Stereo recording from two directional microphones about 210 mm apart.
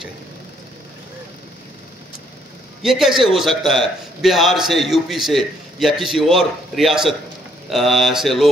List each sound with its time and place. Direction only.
2.8 s a man's voice: centre (ahead or behind)